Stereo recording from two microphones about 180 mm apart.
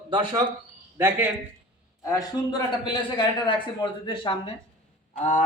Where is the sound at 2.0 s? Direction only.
20° left (ahead or behind).